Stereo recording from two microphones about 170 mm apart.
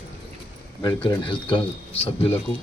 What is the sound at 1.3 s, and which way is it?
Speech, 30° left (ahead or behind).